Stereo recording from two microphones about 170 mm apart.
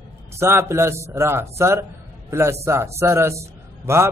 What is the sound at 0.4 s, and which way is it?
A man's voice, 15° right (ahead or behind).